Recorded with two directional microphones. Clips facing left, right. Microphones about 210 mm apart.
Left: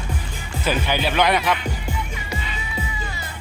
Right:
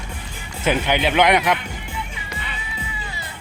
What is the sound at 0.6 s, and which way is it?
Speech, 20° right (ahead or behind).